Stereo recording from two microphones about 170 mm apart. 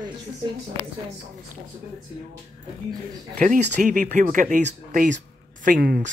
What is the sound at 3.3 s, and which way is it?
Speech, 50° right (ahead or behind).